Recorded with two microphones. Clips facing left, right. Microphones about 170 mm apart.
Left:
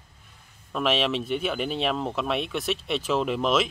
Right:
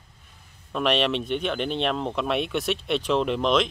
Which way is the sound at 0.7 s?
Centre (ahead or behind).